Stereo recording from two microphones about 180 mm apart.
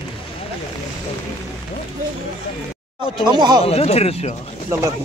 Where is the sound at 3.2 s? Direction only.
25° right (ahead or behind).